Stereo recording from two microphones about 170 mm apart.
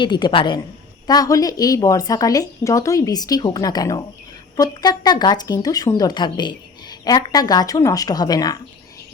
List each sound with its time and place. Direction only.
0.0 s a woman's voice: 25° left (ahead or behind)